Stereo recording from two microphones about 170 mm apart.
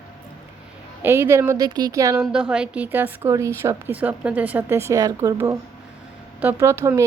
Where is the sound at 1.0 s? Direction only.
15° right (ahead or behind).